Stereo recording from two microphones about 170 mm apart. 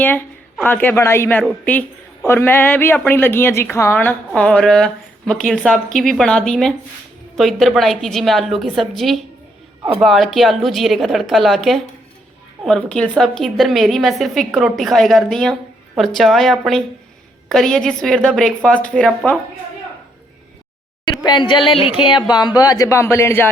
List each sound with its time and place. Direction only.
0.0 s a woman's voice: 10° left (ahead or behind)
21.1 s speech: 25° left (ahead or behind)